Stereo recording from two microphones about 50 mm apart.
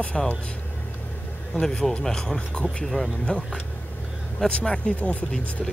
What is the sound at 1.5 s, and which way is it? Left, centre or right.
Speech, centre.